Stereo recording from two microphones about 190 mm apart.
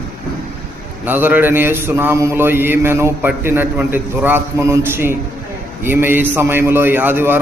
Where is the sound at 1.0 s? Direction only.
10° right (ahead or behind).